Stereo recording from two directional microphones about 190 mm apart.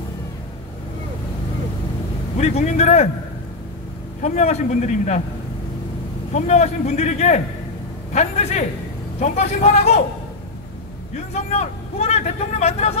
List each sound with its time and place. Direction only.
2.3 s a man's voice: 35° left (ahead or behind)
4.2 s a man's voice: 35° left (ahead or behind)
6.3 s a man's voice: 35° left (ahead or behind)
11.1 s a man's voice: 35° left (ahead or behind)